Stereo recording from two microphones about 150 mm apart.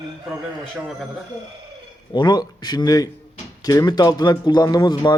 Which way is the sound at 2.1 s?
30° left (ahead or behind).